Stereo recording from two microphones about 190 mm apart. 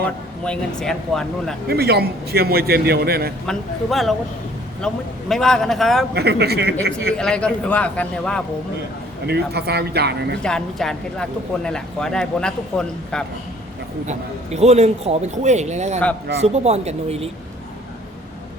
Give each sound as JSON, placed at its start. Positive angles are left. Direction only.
{"t": 0.0, "sound": "speech", "side_deg": 5}
{"t": 1.6, "sound": "a man's voice", "side_deg": -55}
{"t": 3.4, "sound": "speech", "side_deg": 0}
{"t": 6.1, "sound": "a man's voice", "side_deg": -60}
{"t": 7.1, "sound": "speech", "side_deg": 5}
{"t": 9.2, "sound": "a man's voice", "side_deg": -60}
{"t": 10.4, "sound": "speech", "side_deg": 5}
{"t": 14.1, "sound": "a man's voice", "side_deg": -35}